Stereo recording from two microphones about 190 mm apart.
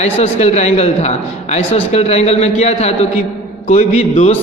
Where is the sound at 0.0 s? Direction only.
35° left (ahead or behind).